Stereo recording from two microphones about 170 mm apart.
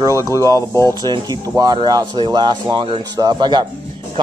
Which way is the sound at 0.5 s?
15° left (ahead or behind).